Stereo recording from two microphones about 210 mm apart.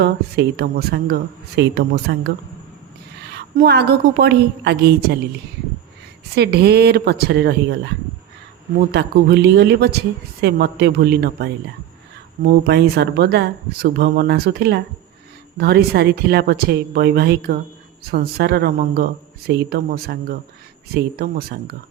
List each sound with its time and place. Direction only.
0.0 s speech: 50° right (ahead or behind)
3.3 s speech: 50° right (ahead or behind)
6.3 s speech: 50° right (ahead or behind)
8.9 s speech: 50° right (ahead or behind)